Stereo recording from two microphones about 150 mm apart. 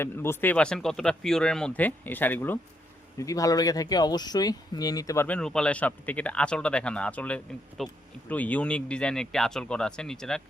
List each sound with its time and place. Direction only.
0.0 s speech: 15° left (ahead or behind)
5.4 s speech: 5° left (ahead or behind)